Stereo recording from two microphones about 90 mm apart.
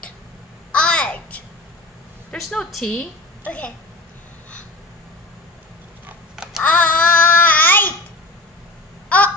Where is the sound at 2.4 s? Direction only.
5° left (ahead or behind).